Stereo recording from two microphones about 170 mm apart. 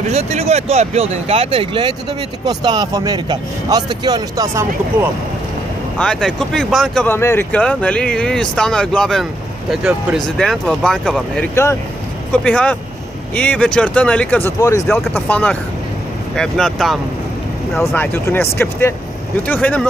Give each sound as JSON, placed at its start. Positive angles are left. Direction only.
{"t": 0.1, "sound": "speech", "side_deg": -40}
{"t": 5.9, "sound": "speech", "side_deg": 5}
{"t": 7.2, "sound": "speech", "side_deg": 15}
{"t": 17.7, "sound": "speech", "side_deg": 10}